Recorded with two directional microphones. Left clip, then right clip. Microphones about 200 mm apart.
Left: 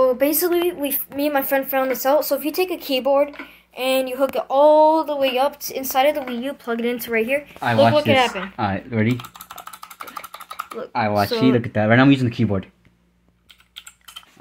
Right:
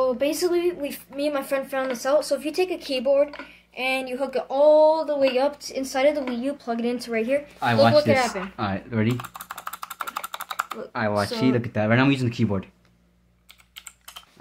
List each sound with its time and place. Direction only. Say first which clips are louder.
0.2 s speech: left 4 dB; centre (ahead or behind)
7.6 s speech: left 2 dB; 15° left (ahead or behind)
8.1 s speech: left 4 dB; 5° right (ahead or behind)
8.5 s speech: left 4 dB; 20° left (ahead or behind)
9.1 s typing: left 3 dB; 30° right (ahead or behind)
10.8 s speech: left 6 dB; 10° left (ahead or behind)